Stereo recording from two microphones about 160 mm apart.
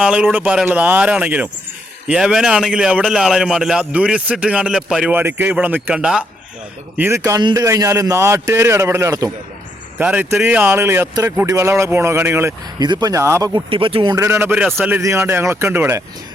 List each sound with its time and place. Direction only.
0.0 s a man's voice: 10° right (ahead or behind)
7.2 s a man's voice: 25° right (ahead or behind)
10.0 s a man's voice: 10° right (ahead or behind); by 14.2 s 30° right (ahead or behind)
14.2 s a man's voice: 15° right (ahead or behind)